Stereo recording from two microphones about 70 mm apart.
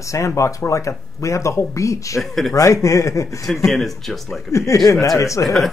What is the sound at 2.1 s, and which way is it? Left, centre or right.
Speech, centre.